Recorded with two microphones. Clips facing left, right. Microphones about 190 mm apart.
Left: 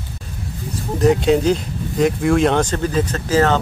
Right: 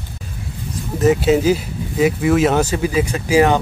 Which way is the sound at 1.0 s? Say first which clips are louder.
Right 1 dB; 5° right (ahead or behind).